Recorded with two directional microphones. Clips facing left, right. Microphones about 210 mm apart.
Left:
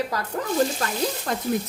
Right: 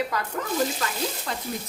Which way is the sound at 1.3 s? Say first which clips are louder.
Left 5 dB; 45° left (ahead or behind).